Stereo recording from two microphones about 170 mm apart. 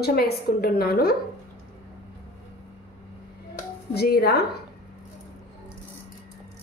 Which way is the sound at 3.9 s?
70° left (ahead or behind).